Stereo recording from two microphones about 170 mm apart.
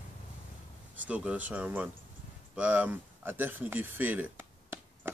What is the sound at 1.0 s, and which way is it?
Speech, 10° right (ahead or behind).